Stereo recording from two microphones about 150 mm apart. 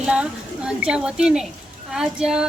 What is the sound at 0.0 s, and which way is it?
A woman's voice, 5° right (ahead or behind).